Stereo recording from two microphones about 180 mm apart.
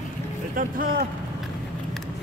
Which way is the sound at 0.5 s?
50° right (ahead or behind).